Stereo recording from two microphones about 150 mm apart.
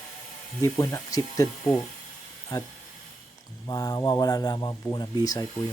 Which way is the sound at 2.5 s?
25° left (ahead or behind).